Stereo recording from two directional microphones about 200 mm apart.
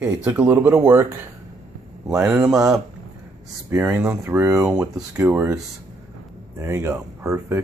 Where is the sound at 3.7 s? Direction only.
10° right (ahead or behind).